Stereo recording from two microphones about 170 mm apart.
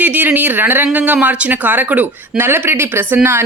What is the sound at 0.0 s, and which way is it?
Speech, 10° right (ahead or behind).